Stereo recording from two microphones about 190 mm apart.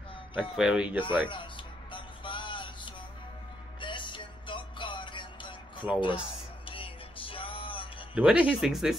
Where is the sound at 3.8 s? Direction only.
25° left (ahead or behind).